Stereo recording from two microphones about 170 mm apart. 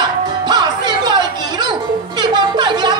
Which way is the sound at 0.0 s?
25° right (ahead or behind).